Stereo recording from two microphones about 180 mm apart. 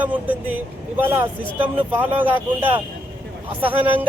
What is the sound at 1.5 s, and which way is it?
Speech, 25° right (ahead or behind).